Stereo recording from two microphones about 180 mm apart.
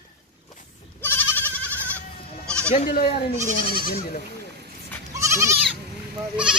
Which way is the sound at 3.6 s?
55° left (ahead or behind).